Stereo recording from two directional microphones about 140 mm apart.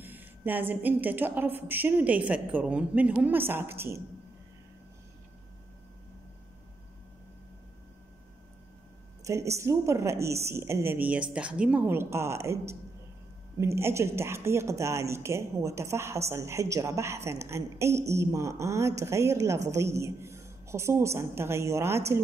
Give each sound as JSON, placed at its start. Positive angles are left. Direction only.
{"t": 0.0, "sound": "a woman's voice", "side_deg": -15}
{"t": 9.2, "sound": "a woman's voice", "side_deg": -20}